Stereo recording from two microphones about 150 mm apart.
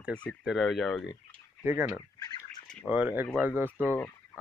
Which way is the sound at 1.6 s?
10° right (ahead or behind).